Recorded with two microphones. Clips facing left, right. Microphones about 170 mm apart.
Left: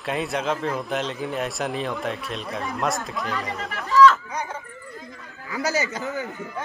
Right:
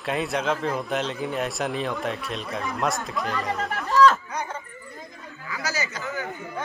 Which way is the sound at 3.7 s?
50° right (ahead or behind).